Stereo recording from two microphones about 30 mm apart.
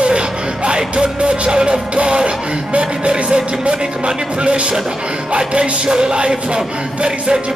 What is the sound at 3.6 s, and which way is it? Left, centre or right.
Speech, right.